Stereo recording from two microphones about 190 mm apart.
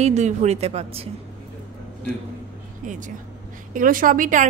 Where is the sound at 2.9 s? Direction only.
40° right (ahead or behind).